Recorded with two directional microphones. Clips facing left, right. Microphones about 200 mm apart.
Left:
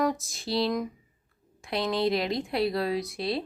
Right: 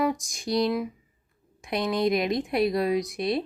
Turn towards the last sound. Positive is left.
turn(degrees=-20)  # may be behind; listen again after turning